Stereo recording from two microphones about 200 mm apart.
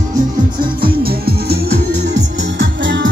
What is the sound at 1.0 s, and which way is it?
Music, 50° right (ahead or behind).